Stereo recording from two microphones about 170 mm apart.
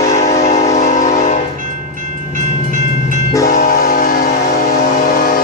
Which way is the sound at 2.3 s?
50° right (ahead or behind).